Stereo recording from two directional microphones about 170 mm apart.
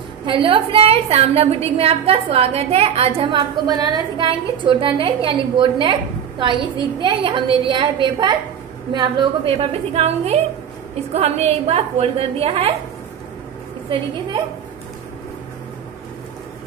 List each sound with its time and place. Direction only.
0.2 s a woman's voice: 30° right (ahead or behind)